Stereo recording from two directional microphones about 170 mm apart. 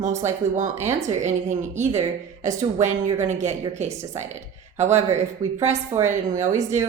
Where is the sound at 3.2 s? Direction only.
45° right (ahead or behind).